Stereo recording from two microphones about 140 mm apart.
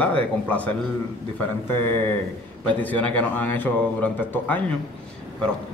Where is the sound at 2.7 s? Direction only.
10° left (ahead or behind).